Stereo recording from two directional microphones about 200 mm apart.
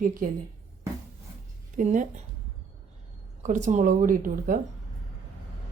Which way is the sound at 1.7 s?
40° right (ahead or behind).